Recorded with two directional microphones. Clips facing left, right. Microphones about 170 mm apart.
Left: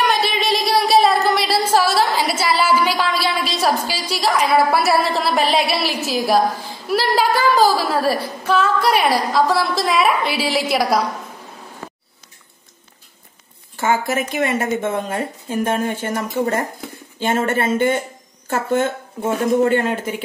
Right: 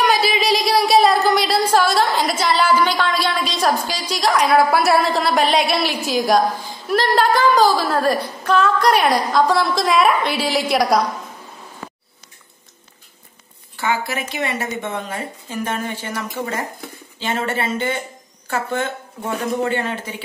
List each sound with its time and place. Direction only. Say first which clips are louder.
0.0 s a woman's voice: right 1 dB; centre (ahead or behind)
13.7 s a woman's voice: left 4 dB; 45° left (ahead or behind)